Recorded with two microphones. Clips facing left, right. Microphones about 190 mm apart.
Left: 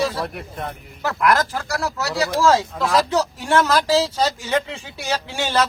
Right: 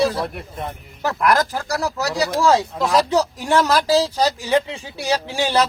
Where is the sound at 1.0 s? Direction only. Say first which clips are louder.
Right 1 dB; 20° right (ahead or behind).